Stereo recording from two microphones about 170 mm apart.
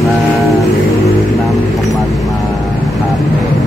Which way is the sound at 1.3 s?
Centre (ahead or behind).